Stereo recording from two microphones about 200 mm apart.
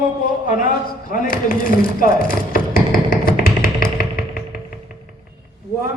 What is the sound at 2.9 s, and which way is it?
Music, 45° left (ahead or behind).